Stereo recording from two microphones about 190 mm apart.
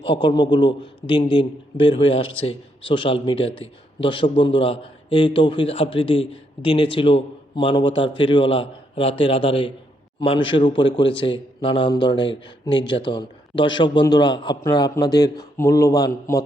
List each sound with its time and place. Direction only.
0.1 s a man's voice: 25° left (ahead or behind)